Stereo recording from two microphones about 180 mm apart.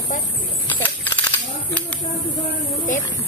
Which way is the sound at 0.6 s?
10° left (ahead or behind).